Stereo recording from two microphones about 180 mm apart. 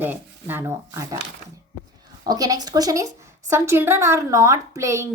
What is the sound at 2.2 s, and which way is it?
A woman's voice, 20° right (ahead or behind).